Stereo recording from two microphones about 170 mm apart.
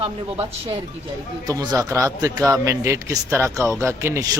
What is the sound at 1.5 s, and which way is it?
A man's voice, 20° right (ahead or behind).